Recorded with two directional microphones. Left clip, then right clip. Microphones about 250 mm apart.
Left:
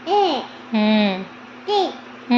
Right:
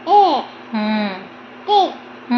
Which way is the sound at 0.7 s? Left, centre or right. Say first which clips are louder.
Left 3 dB; left.